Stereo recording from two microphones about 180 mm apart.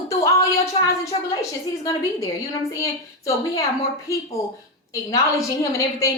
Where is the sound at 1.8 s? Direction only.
15° left (ahead or behind).